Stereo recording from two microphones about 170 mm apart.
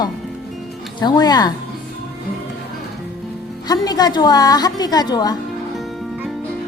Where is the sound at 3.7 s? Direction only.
25° left (ahead or behind).